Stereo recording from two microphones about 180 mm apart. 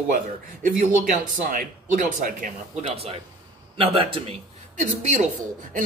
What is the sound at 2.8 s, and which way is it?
A man's voice, 35° right (ahead or behind).